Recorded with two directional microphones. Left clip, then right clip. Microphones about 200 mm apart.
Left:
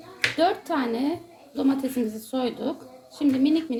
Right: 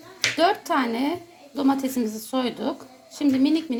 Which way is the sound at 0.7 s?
20° right (ahead or behind).